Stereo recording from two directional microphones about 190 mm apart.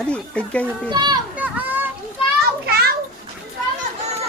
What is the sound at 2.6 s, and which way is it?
Children playing, 55° right (ahead or behind).